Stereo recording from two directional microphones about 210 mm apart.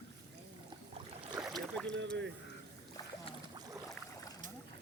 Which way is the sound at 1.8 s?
60° right (ahead or behind).